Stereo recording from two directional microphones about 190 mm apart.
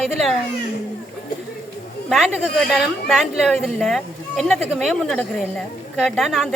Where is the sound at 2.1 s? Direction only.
Centre (ahead or behind).